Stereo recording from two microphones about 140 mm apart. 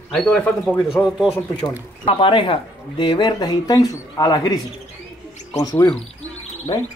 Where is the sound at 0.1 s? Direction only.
10° left (ahead or behind).